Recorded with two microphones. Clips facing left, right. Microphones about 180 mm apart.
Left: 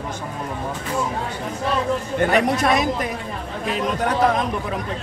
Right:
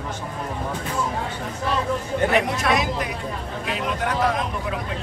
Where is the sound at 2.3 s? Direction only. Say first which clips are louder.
Left 4 dB; 40° left (ahead or behind).